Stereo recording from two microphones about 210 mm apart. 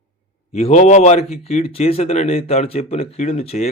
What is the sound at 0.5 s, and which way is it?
Speech, 30° left (ahead or behind).